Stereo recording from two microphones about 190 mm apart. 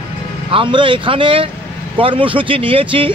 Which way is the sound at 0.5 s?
25° right (ahead or behind).